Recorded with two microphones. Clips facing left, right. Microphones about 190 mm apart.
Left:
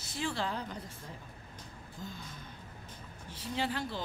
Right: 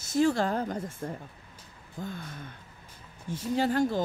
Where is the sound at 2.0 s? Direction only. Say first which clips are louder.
Right 8 dB; 55° right (ahead or behind).